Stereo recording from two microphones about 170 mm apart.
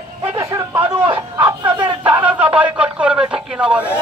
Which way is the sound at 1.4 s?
25° right (ahead or behind).